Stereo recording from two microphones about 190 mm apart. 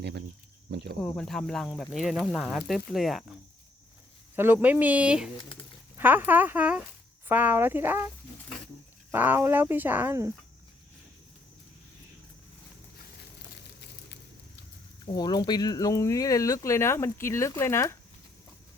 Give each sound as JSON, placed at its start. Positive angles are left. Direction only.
{"t": 0.0, "sound": "cricket", "side_deg": -60}
{"t": 0.7, "sound": "speech", "side_deg": -65}
{"t": 1.0, "sound": "speech", "side_deg": 5}
{"t": 4.4, "sound": "speech", "side_deg": -10}
{"t": 9.1, "sound": "speech", "side_deg": -10}
{"t": 15.0, "sound": "speech", "side_deg": 20}